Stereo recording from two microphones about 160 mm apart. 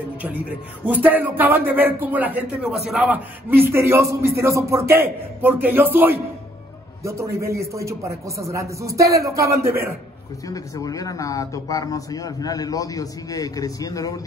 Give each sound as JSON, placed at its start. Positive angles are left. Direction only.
{"t": 0.2, "sound": "a man's voice", "side_deg": -10}
{"t": 10.5, "sound": "speech", "side_deg": 20}